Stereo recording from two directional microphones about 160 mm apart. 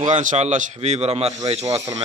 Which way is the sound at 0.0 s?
50° right (ahead or behind).